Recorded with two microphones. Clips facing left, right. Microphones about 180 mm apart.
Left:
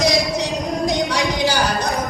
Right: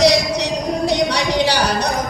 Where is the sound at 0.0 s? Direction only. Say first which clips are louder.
Right 3 dB; 70° right (ahead or behind).